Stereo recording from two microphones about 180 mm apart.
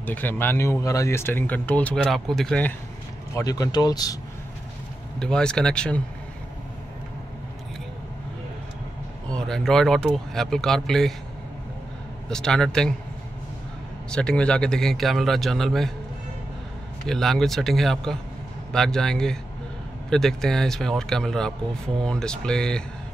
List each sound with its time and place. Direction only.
0.0 s speech: 10° left (ahead or behind)
3.3 s speech: 20° left (ahead or behind)
5.2 s speech: 5° left (ahead or behind)
9.3 s speech: 5° left (ahead or behind)
12.3 s speech: 5° left (ahead or behind)
14.1 s speech: 5° left (ahead or behind)
17.0 s speech: centre (ahead or behind)